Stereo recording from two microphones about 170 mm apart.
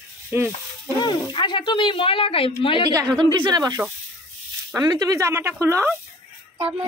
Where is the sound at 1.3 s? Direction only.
30° left (ahead or behind).